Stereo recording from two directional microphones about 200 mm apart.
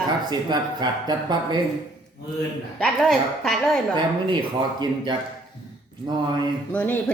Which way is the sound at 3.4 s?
Centre (ahead or behind).